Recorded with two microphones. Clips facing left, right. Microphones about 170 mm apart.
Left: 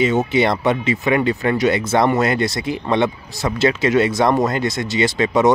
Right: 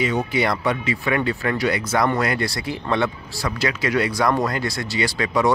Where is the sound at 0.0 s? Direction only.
25° left (ahead or behind).